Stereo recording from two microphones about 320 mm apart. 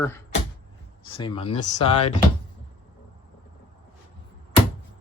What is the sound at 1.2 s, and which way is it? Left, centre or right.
Speech, centre.